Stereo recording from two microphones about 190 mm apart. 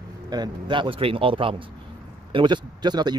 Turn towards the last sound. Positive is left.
turn(degrees=-20)  # may be behind; listen again after turning